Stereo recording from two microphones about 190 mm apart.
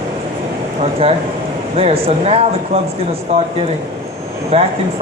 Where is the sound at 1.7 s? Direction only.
30° right (ahead or behind).